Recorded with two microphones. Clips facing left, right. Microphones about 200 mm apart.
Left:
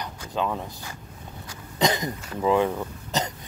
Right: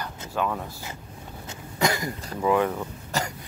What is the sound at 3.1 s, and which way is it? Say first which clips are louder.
Throat clearing: left 1 dB; 20° left (ahead or behind).